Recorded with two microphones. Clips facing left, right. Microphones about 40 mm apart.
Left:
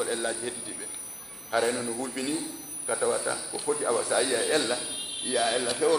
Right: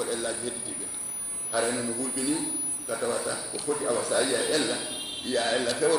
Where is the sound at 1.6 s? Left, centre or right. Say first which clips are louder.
Left 1 dB; centre.